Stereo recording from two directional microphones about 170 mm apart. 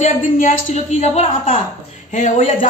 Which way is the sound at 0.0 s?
50° left (ahead or behind).